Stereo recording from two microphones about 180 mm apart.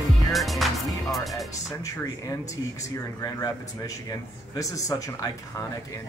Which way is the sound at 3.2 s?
20° left (ahead or behind).